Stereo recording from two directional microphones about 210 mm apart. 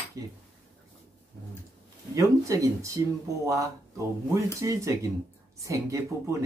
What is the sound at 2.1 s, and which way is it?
Speech, 15° right (ahead or behind).